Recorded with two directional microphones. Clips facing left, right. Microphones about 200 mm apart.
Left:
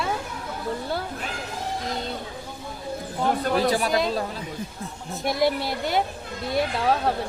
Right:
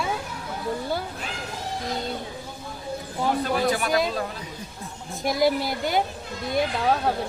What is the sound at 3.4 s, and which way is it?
Speech, 35° left (ahead or behind).